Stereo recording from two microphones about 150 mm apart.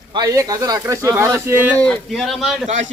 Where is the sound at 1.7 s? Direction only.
5° left (ahead or behind).